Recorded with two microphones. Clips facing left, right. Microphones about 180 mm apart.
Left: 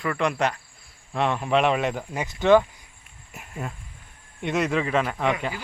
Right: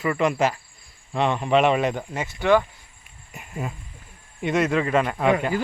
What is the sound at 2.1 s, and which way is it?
Speech, 20° left (ahead or behind).